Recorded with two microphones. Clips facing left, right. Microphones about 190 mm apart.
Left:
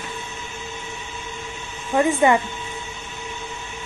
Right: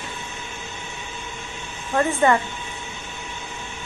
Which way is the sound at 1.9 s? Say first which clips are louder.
Left 2 dB; 15° left (ahead or behind).